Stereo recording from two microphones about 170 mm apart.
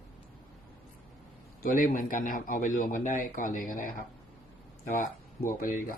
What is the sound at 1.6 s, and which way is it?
Speech, 55° left (ahead or behind).